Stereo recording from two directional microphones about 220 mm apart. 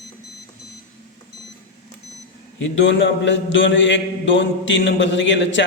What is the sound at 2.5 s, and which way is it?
A man's voice, 55° left (ahead or behind).